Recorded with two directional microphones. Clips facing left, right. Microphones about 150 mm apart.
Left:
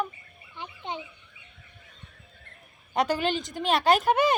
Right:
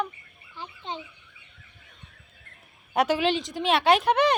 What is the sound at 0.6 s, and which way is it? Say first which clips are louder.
Fowl: even; 15° left (ahead or behind).